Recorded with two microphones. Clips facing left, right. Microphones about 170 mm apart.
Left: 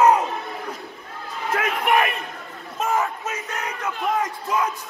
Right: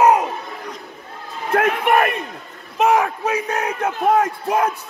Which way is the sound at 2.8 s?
75° right (ahead or behind).